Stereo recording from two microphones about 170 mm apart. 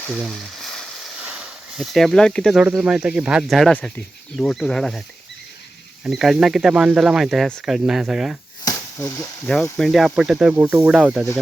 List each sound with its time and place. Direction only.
0.6 s speech: centre (ahead or behind)
6.1 s speech: centre (ahead or behind)
8.6 s a sound: 15° left (ahead or behind)
9.7 s speech: centre (ahead or behind)